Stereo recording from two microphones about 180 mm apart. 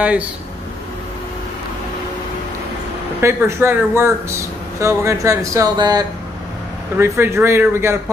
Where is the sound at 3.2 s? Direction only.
15° right (ahead or behind).